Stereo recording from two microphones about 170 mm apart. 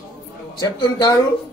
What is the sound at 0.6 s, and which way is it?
Speech, 20° left (ahead or behind).